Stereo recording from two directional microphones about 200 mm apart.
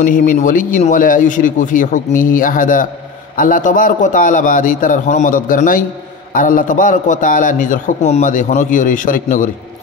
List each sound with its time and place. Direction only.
0.0 s a man's voice: 40° left (ahead or behind)